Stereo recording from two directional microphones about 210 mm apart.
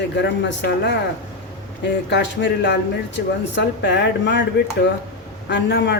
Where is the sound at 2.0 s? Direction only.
55° left (ahead or behind).